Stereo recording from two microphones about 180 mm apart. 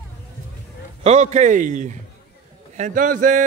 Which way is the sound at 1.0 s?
40° right (ahead or behind).